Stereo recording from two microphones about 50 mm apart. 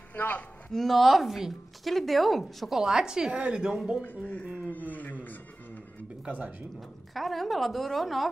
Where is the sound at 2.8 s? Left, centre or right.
Centre.